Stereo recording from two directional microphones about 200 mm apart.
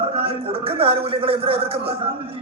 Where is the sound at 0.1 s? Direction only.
30° right (ahead or behind).